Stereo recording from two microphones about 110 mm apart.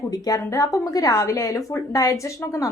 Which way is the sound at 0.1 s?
35° left (ahead or behind).